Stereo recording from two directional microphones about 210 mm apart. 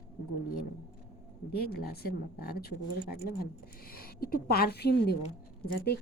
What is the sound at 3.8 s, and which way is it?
A woman's voice, 45° left (ahead or behind).